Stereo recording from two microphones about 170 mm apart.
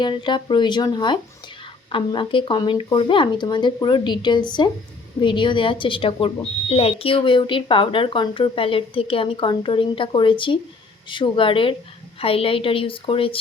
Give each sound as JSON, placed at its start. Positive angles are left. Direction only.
{"t": 0.0, "sound": "speech", "side_deg": 25}